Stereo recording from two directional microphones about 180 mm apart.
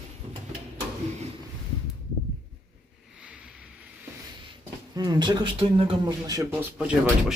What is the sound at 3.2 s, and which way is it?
Vehicle, 5° right (ahead or behind).